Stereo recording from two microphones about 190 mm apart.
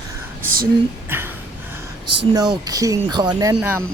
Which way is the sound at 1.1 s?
10° right (ahead or behind).